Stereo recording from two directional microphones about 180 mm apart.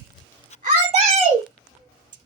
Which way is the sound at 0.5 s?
35° left (ahead or behind).